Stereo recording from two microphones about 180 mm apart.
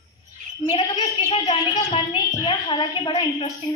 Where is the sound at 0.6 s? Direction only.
25° left (ahead or behind).